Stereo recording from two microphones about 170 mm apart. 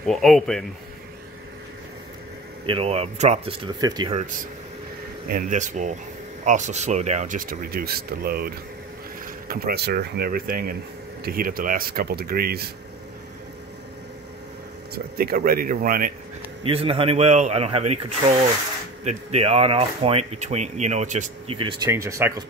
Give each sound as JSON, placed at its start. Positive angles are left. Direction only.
{"t": 0.0, "sound": "a man's voice", "side_deg": 0}
{"t": 2.6, "sound": "speech", "side_deg": -30}
{"t": 4.1, "sound": "speech", "side_deg": -45}
{"t": 15.1, "sound": "speech", "side_deg": -60}
{"t": 16.6, "sound": "speech", "side_deg": -35}
{"t": 21.5, "sound": "speech", "side_deg": -25}